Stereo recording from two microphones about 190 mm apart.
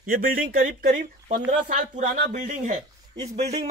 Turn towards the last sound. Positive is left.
turn(degrees=-35)  # may be behind; listen again after turning